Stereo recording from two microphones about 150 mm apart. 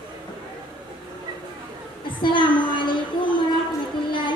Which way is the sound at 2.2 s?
30° left (ahead or behind).